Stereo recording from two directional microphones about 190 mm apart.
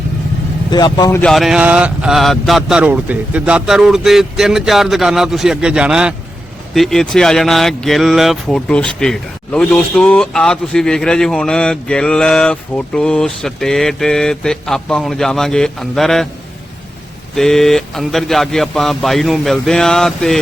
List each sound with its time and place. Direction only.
0.7 s speech: 20° left (ahead or behind)
1.2 s speech: centre (ahead or behind)
17.3 s speech: centre (ahead or behind)